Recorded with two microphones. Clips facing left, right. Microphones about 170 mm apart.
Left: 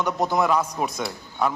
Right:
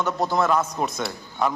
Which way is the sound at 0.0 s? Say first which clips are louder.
Even; 15° left (ahead or behind).